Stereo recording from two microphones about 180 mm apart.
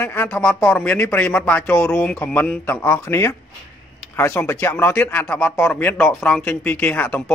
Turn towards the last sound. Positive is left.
turn(degrees=10)  # may be behind; listen again after turning